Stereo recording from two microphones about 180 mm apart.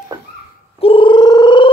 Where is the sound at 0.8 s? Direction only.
30° left (ahead or behind).